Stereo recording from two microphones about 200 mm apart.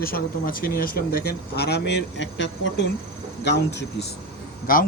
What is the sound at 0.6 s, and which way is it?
Speech, 45° left (ahead or behind).